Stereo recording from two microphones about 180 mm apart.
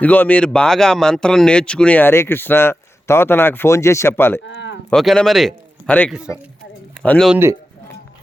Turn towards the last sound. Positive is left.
turn(degrees=-15)  # may be behind; listen again after turning